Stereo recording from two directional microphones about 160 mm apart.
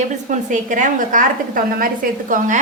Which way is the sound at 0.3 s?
50° right (ahead or behind).